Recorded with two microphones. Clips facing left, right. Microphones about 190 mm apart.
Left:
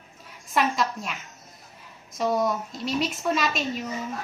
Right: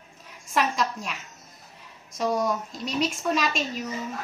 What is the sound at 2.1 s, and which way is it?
A woman's voice, 5° left (ahead or behind).